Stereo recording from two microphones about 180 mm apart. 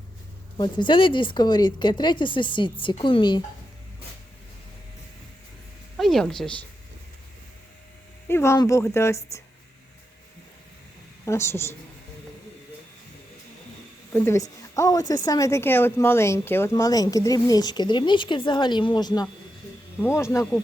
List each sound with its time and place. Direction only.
0.5 s a woman's voice: 25° left (ahead or behind)
6.0 s speech: centre (ahead or behind)
8.3 s a woman's voice: 15° left (ahead or behind)
11.3 s a woman's voice: 15° left (ahead or behind)
14.1 s a woman's voice: 15° left (ahead or behind)